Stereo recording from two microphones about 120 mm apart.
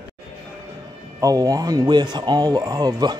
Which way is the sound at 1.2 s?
30° right (ahead or behind).